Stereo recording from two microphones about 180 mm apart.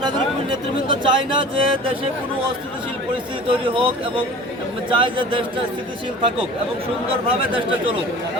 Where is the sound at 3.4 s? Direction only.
30° right (ahead or behind).